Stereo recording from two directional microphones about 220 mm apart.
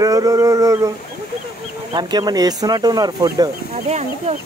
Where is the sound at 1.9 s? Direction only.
20° right (ahead or behind).